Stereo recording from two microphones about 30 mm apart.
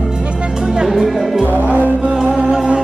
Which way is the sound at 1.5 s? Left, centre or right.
Right.